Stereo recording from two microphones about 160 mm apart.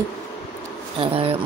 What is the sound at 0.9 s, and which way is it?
Speech, 35° right (ahead or behind).